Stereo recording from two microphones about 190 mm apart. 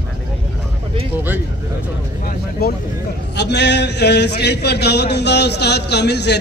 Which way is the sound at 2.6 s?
55° left (ahead or behind).